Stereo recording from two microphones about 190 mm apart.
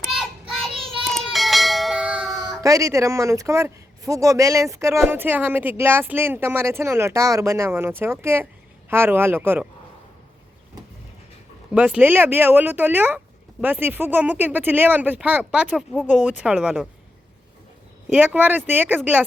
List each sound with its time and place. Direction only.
0.1 s child singing: centre (ahead or behind)
2.6 s speech: 15° right (ahead or behind)
11.7 s speech: 5° right (ahead or behind)
18.1 s speech: 10° right (ahead or behind)